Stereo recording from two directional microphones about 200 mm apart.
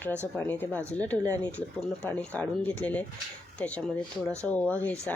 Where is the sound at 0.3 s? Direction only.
10° left (ahead or behind).